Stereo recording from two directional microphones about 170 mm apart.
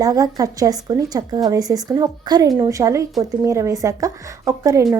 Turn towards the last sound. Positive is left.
turn(degrees=-20)  # may be behind; listen again after turning